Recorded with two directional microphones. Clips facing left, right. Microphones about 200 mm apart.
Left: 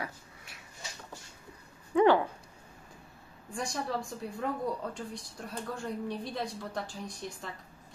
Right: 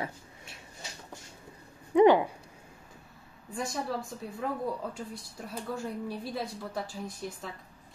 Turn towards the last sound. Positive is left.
turn(degrees=0)  # may be behind; listen again after turning